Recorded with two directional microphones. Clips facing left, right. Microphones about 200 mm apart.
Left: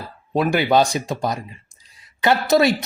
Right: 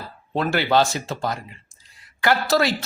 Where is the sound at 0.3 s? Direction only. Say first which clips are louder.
Left 3 dB; 15° left (ahead or behind).